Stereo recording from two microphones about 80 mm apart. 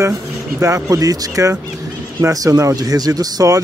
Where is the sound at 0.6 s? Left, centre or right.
Right.